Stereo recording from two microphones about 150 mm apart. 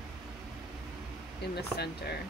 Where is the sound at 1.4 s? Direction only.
90° left.